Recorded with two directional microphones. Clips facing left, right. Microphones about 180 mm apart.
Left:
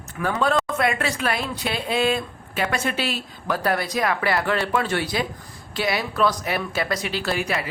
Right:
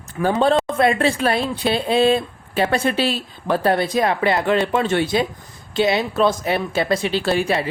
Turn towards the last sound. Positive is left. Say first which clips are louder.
# right 6 dB
turn(degrees=-30)  # may be behind; listen again after turning